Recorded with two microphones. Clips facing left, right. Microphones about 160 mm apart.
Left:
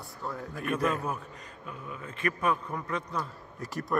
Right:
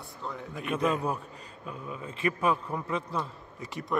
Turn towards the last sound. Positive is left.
turn(degrees=0)  # may be behind; listen again after turning